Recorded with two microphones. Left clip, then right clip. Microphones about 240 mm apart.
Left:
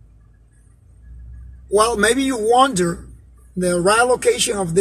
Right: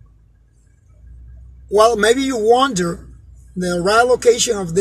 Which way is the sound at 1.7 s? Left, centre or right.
Right.